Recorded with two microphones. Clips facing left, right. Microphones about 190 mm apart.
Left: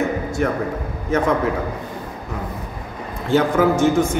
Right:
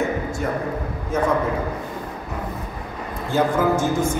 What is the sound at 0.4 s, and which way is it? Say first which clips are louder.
Speech: left 6 dB; 75° left (ahead or behind).